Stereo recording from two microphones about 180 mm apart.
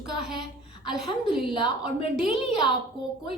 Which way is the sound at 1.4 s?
25° left (ahead or behind).